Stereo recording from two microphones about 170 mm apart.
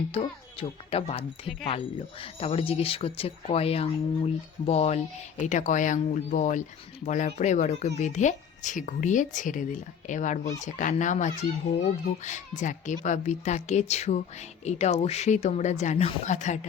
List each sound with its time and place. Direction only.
0.1 s speech: 35° left (ahead or behind)